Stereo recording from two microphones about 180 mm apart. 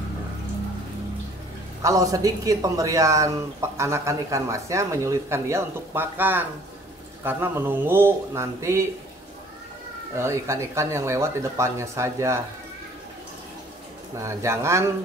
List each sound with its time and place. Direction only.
1.8 s speech: 15° right (ahead or behind)
10.1 s speech: 15° right (ahead or behind)
14.1 s speech: 15° right (ahead or behind)